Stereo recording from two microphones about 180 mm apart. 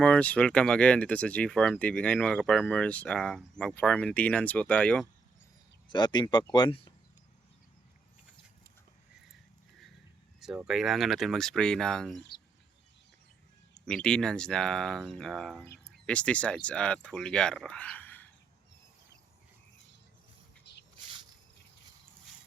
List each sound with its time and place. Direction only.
0.0 s speech: 5° left (ahead or behind)
5.9 s speech: 25° left (ahead or behind)
10.4 s speech: 5° right (ahead or behind)
13.8 s speech: 5° left (ahead or behind)
20.7 s a sound: 70° left (ahead or behind)